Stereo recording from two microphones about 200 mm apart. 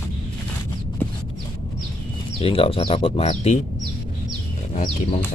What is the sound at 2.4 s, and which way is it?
Speech, 25° left (ahead or behind).